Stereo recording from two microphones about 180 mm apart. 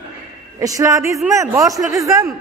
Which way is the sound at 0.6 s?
20° right (ahead or behind).